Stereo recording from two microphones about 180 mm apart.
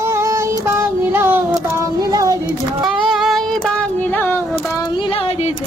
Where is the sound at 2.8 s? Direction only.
Centre (ahead or behind).